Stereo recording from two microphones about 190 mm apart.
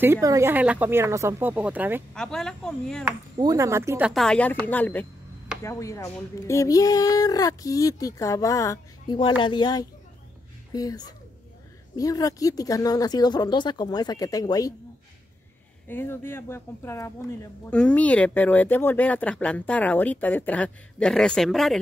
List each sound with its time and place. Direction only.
0.0 s speech: 15° right (ahead or behind)
2.1 s speech: 5° left (ahead or behind)
3.3 s speech: 20° right (ahead or behind)
4.1 s speech: 5° left (ahead or behind); by 14.7 s 20° left (ahead or behind)
15.9 s speech: 10° left (ahead or behind)